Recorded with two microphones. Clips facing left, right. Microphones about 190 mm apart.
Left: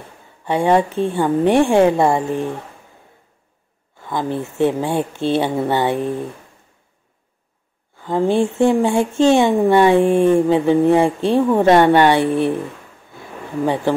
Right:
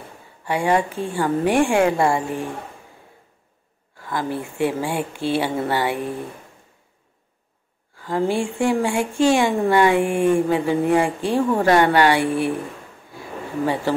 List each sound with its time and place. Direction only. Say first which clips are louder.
0.5 s speech: left 4 dB; 25° left (ahead or behind)
4.0 s speech: left 3 dB; 20° left (ahead or behind)
8.0 s speech: left 5 dB; 20° left (ahead or behind)